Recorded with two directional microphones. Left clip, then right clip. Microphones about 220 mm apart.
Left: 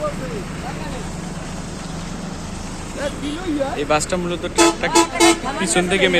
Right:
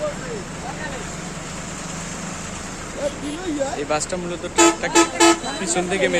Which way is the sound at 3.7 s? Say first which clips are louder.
Left 4 dB; 5° left (ahead or behind).